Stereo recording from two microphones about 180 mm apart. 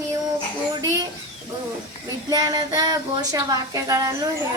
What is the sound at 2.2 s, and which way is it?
Speech, 20° right (ahead or behind).